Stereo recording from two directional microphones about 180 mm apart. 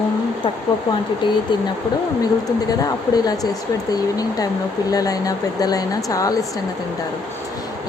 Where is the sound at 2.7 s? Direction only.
20° left (ahead or behind).